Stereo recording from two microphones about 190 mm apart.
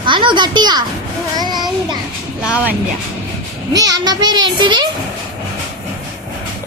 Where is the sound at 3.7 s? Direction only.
20° right (ahead or behind).